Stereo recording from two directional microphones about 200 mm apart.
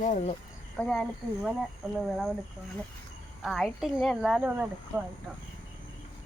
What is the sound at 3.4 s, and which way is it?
Speech, centre (ahead or behind).